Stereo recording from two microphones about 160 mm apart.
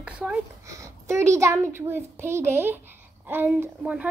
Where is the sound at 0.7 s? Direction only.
20° right (ahead or behind).